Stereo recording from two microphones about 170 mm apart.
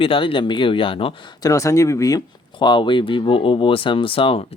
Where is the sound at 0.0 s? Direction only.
30° left (ahead or behind).